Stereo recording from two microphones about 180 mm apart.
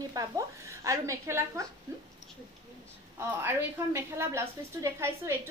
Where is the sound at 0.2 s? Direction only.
20° right (ahead or behind).